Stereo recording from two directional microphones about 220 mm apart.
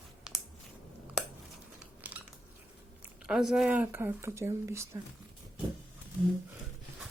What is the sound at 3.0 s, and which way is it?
Speech, 5° right (ahead or behind).